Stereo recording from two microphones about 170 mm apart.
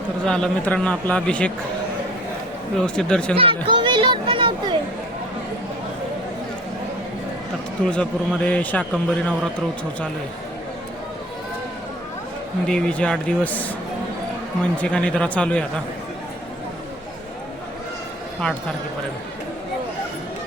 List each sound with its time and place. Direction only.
0.3 s a man's voice: 5° left (ahead or behind)
2.8 s a man's voice: 5° left (ahead or behind)
3.3 s chatter: 30° right (ahead or behind)
7.9 s a man's voice: 5° left (ahead or behind)
12.6 s a man's voice: 5° left (ahead or behind)
14.8 s a man's voice: 5° left (ahead or behind)